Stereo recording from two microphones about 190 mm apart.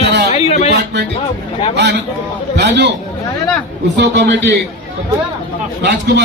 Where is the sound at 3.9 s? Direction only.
65° right (ahead or behind).